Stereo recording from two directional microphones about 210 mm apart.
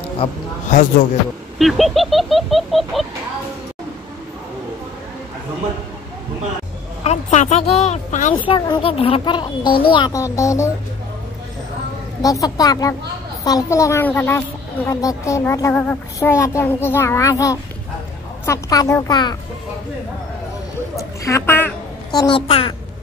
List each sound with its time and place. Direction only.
0.2 s a sound: 35° left (ahead or behind)
1.6 s baby laughter: centre (ahead or behind)
7.0 s speech: 35° left (ahead or behind)
8.4 s a child's voice: 20° left (ahead or behind)
12.2 s a woman's voice: 15° left (ahead or behind)
20.9 s a sound: 15° left (ahead or behind)